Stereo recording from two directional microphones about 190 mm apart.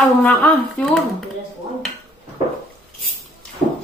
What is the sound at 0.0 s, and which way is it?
Speech, 5° left (ahead or behind).